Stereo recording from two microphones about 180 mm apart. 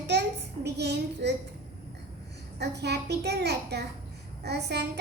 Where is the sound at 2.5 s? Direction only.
70° right (ahead or behind).